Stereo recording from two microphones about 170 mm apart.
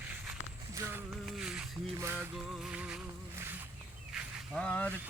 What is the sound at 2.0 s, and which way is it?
Music, 15° right (ahead or behind).